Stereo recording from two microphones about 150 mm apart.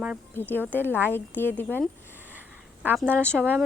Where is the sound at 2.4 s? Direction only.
10° right (ahead or behind).